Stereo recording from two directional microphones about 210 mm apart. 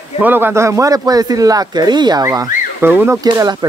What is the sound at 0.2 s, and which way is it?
Speech, 10° right (ahead or behind).